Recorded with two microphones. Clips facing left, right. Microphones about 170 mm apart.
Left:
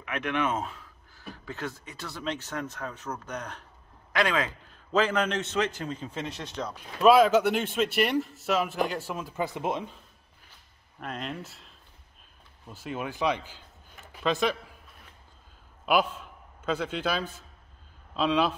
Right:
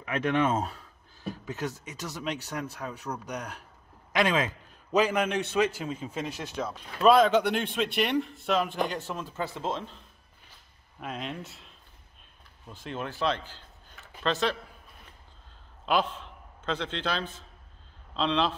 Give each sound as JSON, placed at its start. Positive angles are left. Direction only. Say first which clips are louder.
{"t": 0.0, "sound": "speech", "louder": "right 3 dB", "side_deg": -35}
{"t": 1.1, "sound": "a man's voice", "louder": "right 4 dB", "side_deg": -15}
{"t": 6.7, "sound": "speech", "louder": "left 1 dB", "side_deg": 5}
{"t": 11.0, "sound": "speech", "louder": "even", "side_deg": 0}
{"t": 12.7, "sound": "speech", "louder": "left 1 dB", "side_deg": 10}
{"t": 15.8, "sound": "a man's voice", "louder": "left 2 dB", "side_deg": 10}